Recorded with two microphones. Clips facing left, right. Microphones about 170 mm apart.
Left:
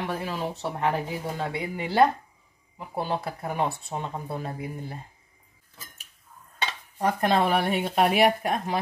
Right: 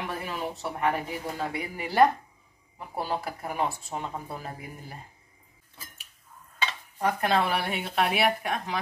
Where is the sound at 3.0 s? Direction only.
20° left (ahead or behind).